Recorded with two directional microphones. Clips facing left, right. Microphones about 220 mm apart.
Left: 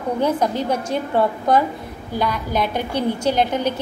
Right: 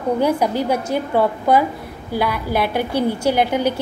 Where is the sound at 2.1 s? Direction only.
10° right (ahead or behind).